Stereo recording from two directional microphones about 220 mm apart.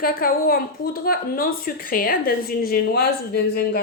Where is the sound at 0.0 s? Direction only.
40° left (ahead or behind).